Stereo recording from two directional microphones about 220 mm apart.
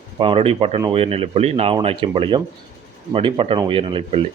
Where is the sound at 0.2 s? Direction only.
25° right (ahead or behind).